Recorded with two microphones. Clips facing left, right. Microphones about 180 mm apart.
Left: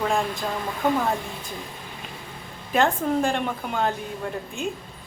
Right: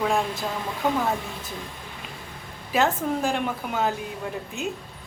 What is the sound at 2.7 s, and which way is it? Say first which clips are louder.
A woman's voice: left 2 dB; 5° right (ahead or behind).